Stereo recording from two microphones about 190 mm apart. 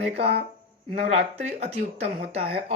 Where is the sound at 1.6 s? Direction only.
35° right (ahead or behind).